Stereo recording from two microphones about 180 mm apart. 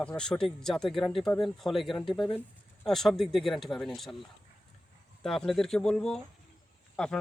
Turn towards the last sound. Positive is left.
turn(degrees=5)  # may be behind; listen again after turning